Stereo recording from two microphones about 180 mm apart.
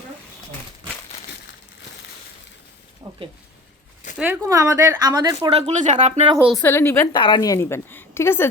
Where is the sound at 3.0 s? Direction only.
20° right (ahead or behind).